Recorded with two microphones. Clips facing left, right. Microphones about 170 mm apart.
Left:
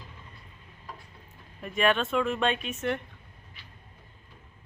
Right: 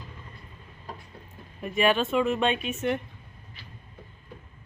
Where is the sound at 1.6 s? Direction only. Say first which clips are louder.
Right 2 dB; 5° right (ahead or behind).